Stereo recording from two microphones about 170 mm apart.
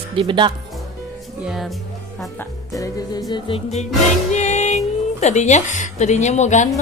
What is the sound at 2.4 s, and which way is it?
Music, 20° left (ahead or behind).